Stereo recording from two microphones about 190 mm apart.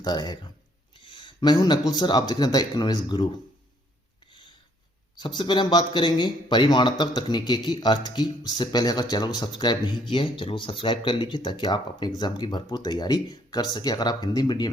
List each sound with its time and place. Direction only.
0.0 s speech: 20° left (ahead or behind)
5.1 s speech: 25° left (ahead or behind)